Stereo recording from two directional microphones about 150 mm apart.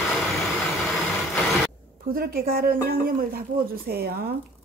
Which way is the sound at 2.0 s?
85° right.